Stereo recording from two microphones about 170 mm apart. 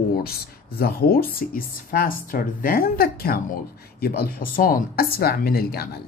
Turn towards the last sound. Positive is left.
turn(degrees=65)  # may be behind; listen again after turning